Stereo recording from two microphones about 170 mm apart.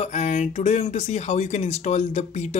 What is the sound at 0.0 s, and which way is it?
Speech, 40° left (ahead or behind).